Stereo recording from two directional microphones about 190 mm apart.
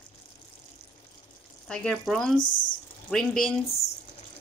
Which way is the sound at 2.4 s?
45° left (ahead or behind).